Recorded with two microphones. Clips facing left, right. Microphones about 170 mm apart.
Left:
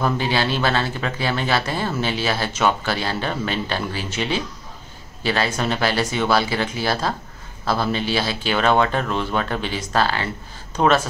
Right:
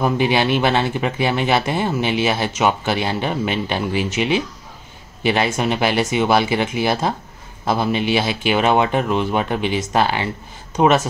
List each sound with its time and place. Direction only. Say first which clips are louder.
0.0 s speech: right 4 dB; 15° right (ahead or behind)